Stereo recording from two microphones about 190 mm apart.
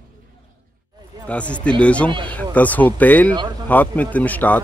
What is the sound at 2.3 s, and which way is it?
A man's voice, 10° left (ahead or behind).